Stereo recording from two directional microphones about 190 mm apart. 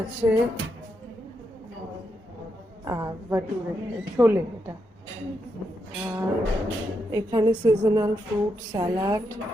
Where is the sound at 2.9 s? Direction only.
20° right (ahead or behind).